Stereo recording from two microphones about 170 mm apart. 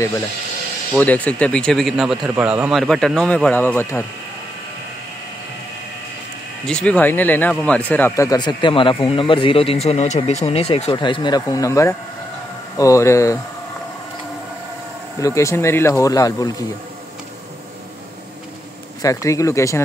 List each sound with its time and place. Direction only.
0.9 s speech: 10° left (ahead or behind)
6.6 s speech: 5° left (ahead or behind)
15.1 s speech: 20° left (ahead or behind)
19.0 s speech: 20° left (ahead or behind)